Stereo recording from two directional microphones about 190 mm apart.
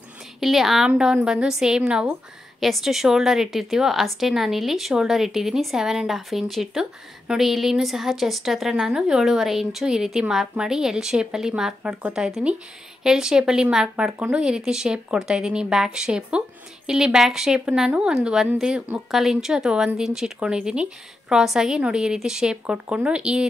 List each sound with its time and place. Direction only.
0.4 s speech: centre (ahead or behind)